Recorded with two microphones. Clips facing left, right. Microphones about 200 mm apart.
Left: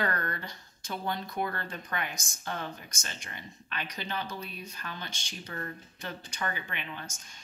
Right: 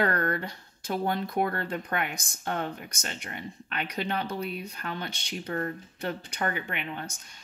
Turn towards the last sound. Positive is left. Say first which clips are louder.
# right 5 dB
turn(degrees=-60)  # may be behind; listen again after turning